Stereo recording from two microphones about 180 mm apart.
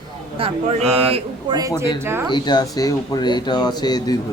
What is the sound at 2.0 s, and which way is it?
Speech, 15° right (ahead or behind).